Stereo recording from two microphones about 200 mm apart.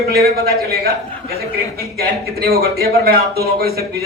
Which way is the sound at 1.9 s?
50° right (ahead or behind).